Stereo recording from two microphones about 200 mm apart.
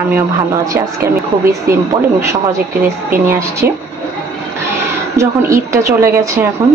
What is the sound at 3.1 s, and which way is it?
Speech, 10° right (ahead or behind).